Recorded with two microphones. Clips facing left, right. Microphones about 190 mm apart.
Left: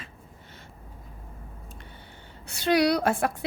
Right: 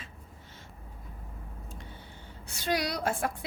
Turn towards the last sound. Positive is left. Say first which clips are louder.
# left 7 dB
turn(degrees=65)  # may be behind; listen again after turning